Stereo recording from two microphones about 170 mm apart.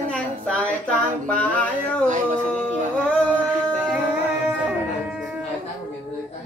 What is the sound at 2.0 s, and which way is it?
Speech, 45° right (ahead or behind).